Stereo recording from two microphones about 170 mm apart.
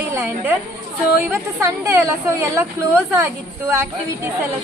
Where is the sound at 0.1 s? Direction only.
15° right (ahead or behind).